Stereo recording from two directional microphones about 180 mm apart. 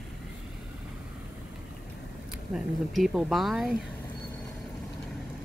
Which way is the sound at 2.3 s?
Centre (ahead or behind).